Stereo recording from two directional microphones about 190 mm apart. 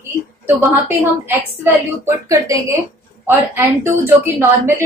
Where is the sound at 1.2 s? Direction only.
10° right (ahead or behind).